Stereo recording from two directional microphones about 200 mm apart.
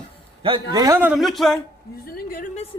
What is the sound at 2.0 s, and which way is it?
Speech, 45° left (ahead or behind).